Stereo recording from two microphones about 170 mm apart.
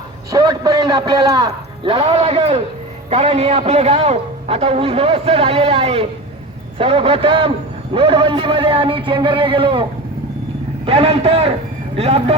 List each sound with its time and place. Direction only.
0.3 s a man's voice: 20° right (ahead or behind)
1.9 s a man's voice: 30° right (ahead or behind)
10.8 s a man's voice: 35° right (ahead or behind)